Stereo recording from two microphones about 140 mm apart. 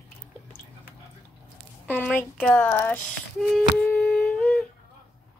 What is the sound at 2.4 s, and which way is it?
Speech, 15° left (ahead or behind).